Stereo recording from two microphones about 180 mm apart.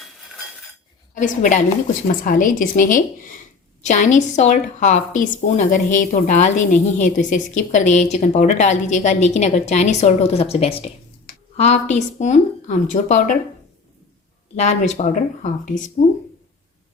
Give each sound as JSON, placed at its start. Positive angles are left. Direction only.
{"t": 1.1, "sound": "a woman's voice", "side_deg": 45}
{"t": 14.5, "sound": "speech", "side_deg": 40}